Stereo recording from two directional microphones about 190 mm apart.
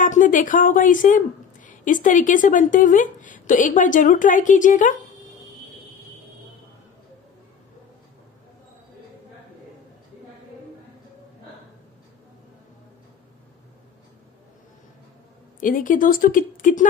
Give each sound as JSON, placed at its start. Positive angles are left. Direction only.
{"t": 0.0, "sound": "a woman's voice", "side_deg": 45}
{"t": 15.6, "sound": "a woman's voice", "side_deg": 45}